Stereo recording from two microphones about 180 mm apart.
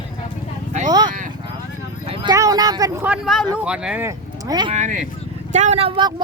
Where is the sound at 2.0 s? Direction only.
30° right (ahead or behind).